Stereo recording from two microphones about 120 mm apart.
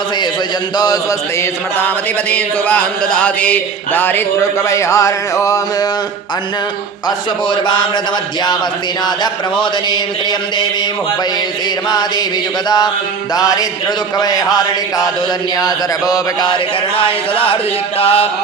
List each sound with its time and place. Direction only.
2.3 s a sound: 10° left (ahead or behind)
4.7 s mantra: 25° left (ahead or behind)
7.5 s chant: 40° left (ahead or behind)
9.0 s chant: 35° left (ahead or behind)
12.6 s chant: 35° left (ahead or behind)
17.0 s speech: 50° left (ahead or behind)
18.0 s music: 55° left (ahead or behind)